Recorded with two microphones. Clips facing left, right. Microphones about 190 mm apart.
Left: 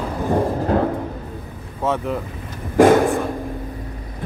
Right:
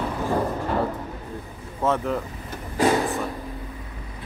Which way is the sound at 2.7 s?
50° left (ahead or behind).